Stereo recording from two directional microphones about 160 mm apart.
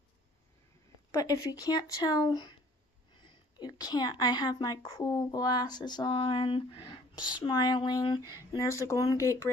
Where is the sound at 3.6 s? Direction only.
25° left (ahead or behind).